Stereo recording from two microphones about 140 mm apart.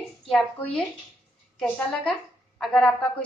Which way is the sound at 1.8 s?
10° left (ahead or behind).